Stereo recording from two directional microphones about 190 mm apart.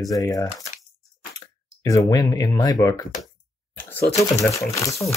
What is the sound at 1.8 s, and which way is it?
Speech, 20° left (ahead or behind).